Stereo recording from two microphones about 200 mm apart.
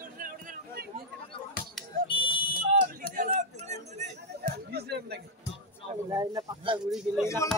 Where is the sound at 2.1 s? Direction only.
25° left (ahead or behind).